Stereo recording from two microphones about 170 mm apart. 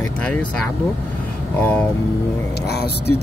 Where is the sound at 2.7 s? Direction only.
70° left (ahead or behind).